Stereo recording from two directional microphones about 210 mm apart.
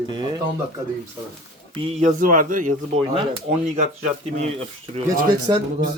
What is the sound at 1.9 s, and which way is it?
Speech, 35° right (ahead or behind).